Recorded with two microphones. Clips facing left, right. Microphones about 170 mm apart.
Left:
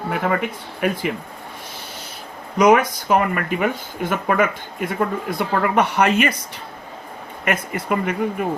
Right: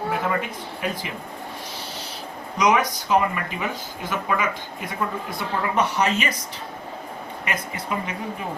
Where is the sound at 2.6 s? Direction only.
50° left (ahead or behind).